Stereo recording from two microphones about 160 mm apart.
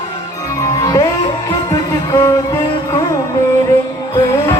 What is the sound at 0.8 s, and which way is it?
Music, 25° left (ahead or behind).